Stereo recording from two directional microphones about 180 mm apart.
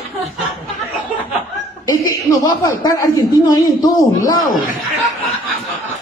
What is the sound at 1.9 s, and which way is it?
A man's voice, 20° left (ahead or behind).